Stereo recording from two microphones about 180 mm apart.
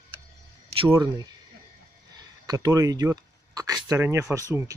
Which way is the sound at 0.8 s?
20° right (ahead or behind).